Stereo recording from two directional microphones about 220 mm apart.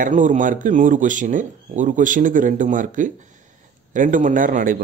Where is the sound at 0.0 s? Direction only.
35° right (ahead or behind).